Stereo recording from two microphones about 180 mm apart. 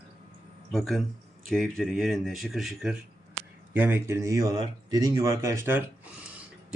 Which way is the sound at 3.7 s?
10° right (ahead or behind).